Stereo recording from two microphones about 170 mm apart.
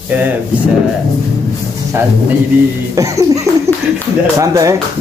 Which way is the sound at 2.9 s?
20° right (ahead or behind).